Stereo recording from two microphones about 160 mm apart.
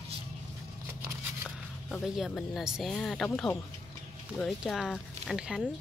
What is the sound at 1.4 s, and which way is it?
Speech, centre (ahead or behind).